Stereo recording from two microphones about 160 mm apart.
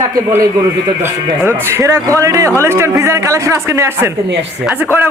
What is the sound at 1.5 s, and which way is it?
A man's voice, 15° right (ahead or behind).